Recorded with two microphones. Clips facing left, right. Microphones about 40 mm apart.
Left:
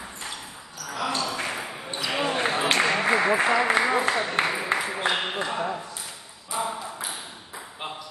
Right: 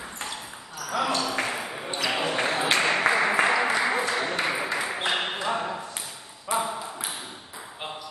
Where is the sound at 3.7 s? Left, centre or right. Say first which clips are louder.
Left 2 dB; left.